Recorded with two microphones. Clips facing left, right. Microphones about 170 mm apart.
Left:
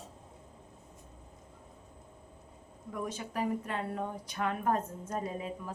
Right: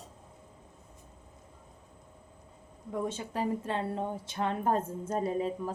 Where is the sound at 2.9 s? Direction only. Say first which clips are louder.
Right 3 dB; 25° right (ahead or behind).